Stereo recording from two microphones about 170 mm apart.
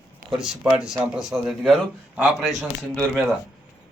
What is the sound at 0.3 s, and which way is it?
Speech, 5° right (ahead or behind).